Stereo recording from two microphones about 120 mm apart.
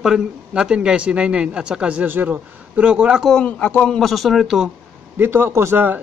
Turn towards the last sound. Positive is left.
turn(degrees=-15)  # may be behind; listen again after turning